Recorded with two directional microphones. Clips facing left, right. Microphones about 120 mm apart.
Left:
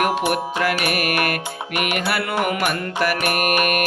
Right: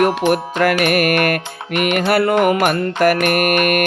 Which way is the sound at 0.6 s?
50° right (ahead or behind).